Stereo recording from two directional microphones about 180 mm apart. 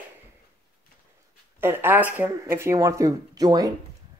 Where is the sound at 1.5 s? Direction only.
10° right (ahead or behind).